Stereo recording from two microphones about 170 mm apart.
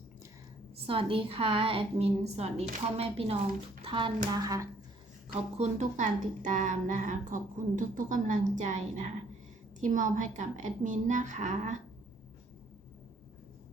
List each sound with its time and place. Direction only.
0.9 s a woman's voice: 30° right (ahead or behind)
5.3 s a woman's voice: 40° right (ahead or behind)